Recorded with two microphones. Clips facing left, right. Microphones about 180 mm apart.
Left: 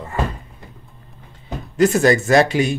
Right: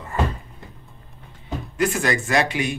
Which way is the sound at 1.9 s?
40° left (ahead or behind).